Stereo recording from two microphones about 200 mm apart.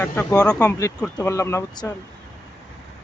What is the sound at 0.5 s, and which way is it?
Speech, 15° left (ahead or behind).